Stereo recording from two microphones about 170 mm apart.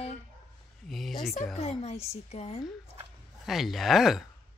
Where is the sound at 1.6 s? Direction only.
40° left (ahead or behind).